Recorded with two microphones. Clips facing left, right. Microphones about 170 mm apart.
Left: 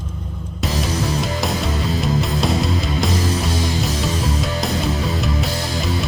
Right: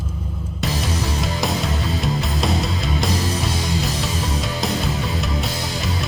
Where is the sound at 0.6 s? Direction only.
Centre (ahead or behind).